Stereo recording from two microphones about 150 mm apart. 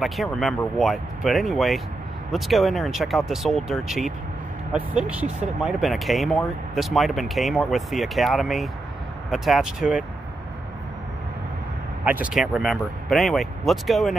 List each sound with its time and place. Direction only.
0.0 s speech: centre (ahead or behind)
12.0 s speech: 10° right (ahead or behind)